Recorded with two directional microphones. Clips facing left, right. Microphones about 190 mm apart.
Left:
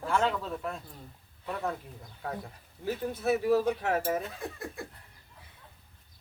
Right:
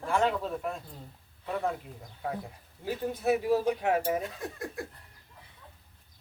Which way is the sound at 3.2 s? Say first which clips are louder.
Left 1 dB; 15° right (ahead or behind).